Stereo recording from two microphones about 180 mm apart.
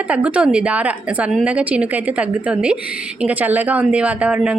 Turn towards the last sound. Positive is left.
turn(degrees=-5)  # may be behind; listen again after turning